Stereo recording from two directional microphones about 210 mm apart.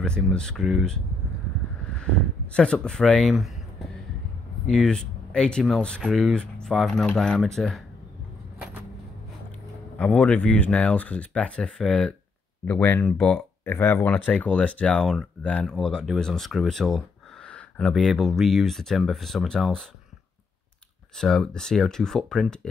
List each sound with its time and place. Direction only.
0.0 s speech: 5° left (ahead or behind)
4.6 s speech: 5° left (ahead or behind)
9.9 s speech: 5° left (ahead or behind)
21.2 s speech: centre (ahead or behind)